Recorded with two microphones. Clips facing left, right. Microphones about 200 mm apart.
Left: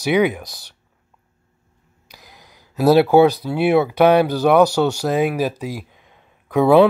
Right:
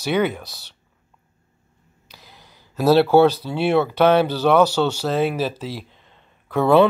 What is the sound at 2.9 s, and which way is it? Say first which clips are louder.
Speech: left 2 dB; 15° left (ahead or behind).